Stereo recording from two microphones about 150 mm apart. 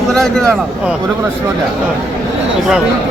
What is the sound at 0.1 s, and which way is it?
Speech, 5° left (ahead or behind).